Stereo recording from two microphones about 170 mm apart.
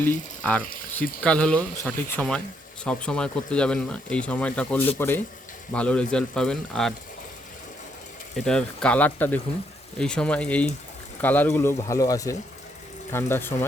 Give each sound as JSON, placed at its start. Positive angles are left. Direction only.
{"t": 0.9, "sound": "speech", "side_deg": 5}
{"t": 8.4, "sound": "speech", "side_deg": 5}